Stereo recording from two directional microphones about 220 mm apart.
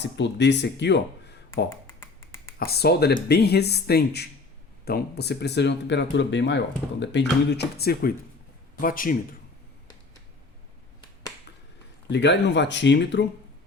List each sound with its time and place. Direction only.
0.0 s speech: 50° left (ahead or behind)
1.9 s finger snapping: 10° left (ahead or behind)
2.6 s a man's voice: 45° left (ahead or behind)
12.0 s speech: 50° left (ahead or behind)